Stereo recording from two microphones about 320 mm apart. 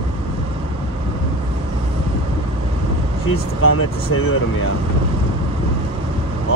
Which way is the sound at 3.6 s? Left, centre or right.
Left.